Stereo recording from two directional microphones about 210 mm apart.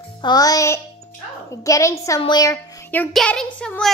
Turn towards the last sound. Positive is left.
turn(degrees=5)  # may be behind; listen again after turning